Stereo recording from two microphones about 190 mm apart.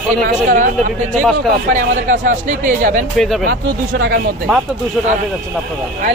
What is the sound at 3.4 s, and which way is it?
Speech, 55° right (ahead or behind).